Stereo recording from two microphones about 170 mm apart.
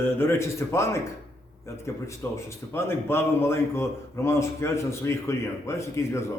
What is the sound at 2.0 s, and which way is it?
A man's voice, 15° left (ahead or behind).